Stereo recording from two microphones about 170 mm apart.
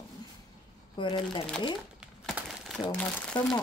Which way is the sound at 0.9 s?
30° left (ahead or behind).